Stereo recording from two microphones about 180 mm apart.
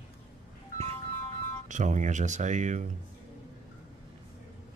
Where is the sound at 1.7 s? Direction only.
45° right (ahead or behind).